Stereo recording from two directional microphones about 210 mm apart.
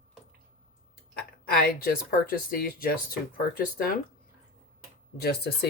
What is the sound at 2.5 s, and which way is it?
Speech, 45° left (ahead or behind).